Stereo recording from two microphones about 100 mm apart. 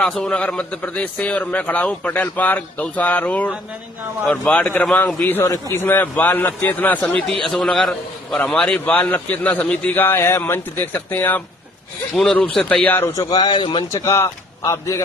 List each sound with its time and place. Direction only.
0.0 s a man's voice: 5° left (ahead or behind)
12.1 s a man's voice: 5° left (ahead or behind)
13.1 s a man's voice: 45° left (ahead or behind)
13.9 s a man's voice: 25° left (ahead or behind)